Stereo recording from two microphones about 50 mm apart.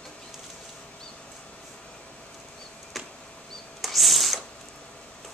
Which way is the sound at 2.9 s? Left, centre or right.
Centre.